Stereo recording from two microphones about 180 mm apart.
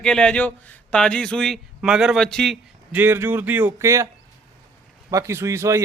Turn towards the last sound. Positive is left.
turn(degrees=-15)  # may be behind; listen again after turning